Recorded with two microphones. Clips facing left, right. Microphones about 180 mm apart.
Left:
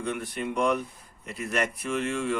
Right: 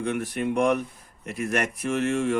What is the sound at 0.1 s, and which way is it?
A man's voice, 55° right (ahead or behind).